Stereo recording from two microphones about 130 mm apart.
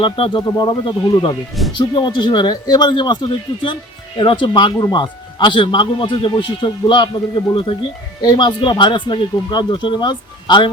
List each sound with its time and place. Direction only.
0.0 s a man's voice: 40° left (ahead or behind)
0.4 s a man's voice: 25° left (ahead or behind)